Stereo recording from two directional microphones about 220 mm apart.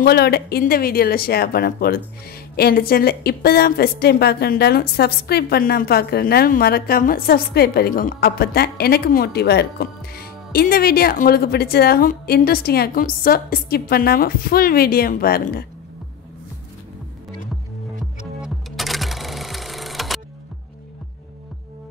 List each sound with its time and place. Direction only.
0.0 s a woman's voice: 45° left (ahead or behind)
18.4 s music: centre (ahead or behind)